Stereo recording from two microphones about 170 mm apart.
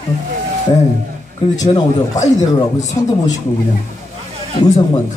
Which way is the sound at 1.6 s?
20° left (ahead or behind).